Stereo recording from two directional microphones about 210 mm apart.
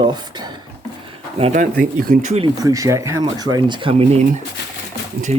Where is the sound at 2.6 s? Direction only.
15° right (ahead or behind); by 4.2 s 30° right (ahead or behind).